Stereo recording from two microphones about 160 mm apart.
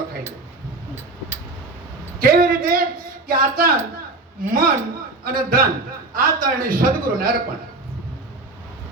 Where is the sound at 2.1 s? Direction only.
65° right (ahead or behind).